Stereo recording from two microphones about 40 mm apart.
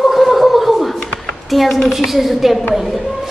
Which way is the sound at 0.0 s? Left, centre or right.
Centre.